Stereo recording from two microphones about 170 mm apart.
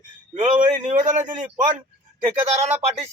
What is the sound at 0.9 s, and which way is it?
Speech, 45° right (ahead or behind).